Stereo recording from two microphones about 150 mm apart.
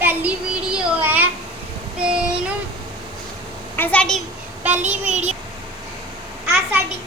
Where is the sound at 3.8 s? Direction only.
10° left (ahead or behind).